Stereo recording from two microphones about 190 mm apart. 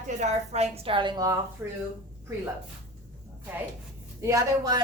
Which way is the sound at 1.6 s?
5° right (ahead or behind).